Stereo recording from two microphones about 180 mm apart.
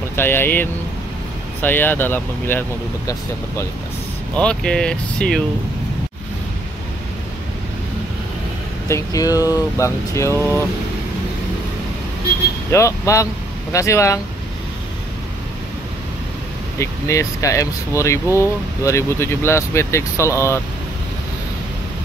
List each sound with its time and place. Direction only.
0.1 s speech: 10° left (ahead or behind)
4.4 s speech: 5° left (ahead or behind)
8.8 s speech: 15° left (ahead or behind)
12.7 s speech: 15° left (ahead or behind)
16.7 s speech: 15° left (ahead or behind)